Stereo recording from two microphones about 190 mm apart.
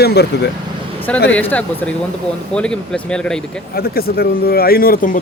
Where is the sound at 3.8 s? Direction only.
50° left (ahead or behind).